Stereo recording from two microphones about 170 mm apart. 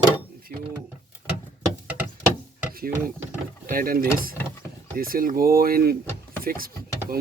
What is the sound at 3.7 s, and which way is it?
Speech, 55° right (ahead or behind).